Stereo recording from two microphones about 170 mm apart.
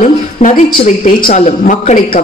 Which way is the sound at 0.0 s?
45° left (ahead or behind).